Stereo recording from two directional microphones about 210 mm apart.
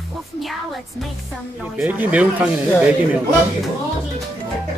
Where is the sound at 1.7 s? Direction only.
10° right (ahead or behind).